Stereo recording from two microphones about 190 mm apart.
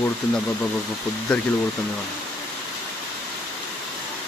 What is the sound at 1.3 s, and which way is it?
Speech, 5° left (ahead or behind).